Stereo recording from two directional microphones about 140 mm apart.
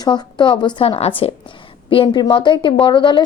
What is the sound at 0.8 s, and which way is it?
Speech, 45° left (ahead or behind).